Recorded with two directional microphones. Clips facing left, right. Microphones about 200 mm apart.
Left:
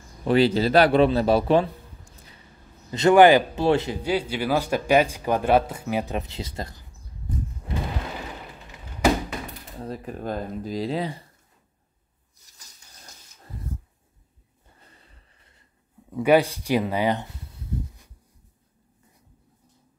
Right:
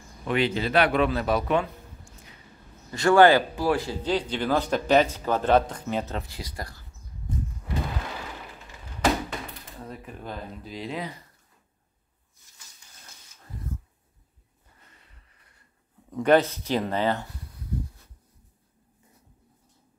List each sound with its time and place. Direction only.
0.2 s a man's voice: 35° left (ahead or behind)
2.9 s a man's voice: 20° left (ahead or behind)
4.0 s a man's voice: 10° left (ahead or behind)
9.8 s speech: 35° left (ahead or behind)
12.4 s a sound: 40° left (ahead or behind)
14.8 s a sound: 30° left (ahead or behind)
16.1 s speech: 10° left (ahead or behind)